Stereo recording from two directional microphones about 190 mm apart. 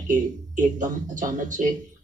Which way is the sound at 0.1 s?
45° right (ahead or behind).